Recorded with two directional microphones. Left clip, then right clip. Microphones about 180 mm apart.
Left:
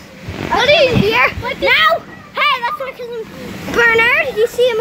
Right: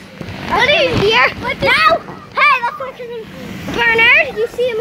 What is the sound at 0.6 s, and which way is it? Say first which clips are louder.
Speech: left 2 dB; 60° left (ahead or behind).